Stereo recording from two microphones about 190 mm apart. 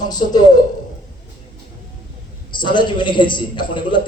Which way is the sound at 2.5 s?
25° left (ahead or behind).